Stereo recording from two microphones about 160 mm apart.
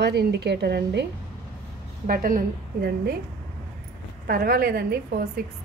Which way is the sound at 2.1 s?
65° right (ahead or behind).